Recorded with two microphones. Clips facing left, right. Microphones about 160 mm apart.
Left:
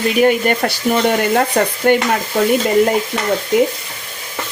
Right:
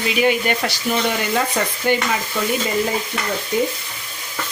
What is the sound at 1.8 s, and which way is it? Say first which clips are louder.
Stir: left 5 dB; 55° left (ahead or behind).